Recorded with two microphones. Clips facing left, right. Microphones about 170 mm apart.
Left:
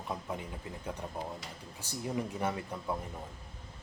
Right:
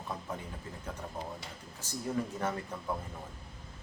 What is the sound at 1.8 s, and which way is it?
A man's voice, 10° left (ahead or behind).